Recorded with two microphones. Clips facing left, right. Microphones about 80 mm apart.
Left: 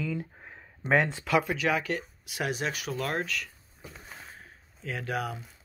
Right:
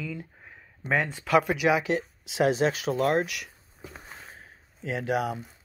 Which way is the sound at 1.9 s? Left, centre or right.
Right.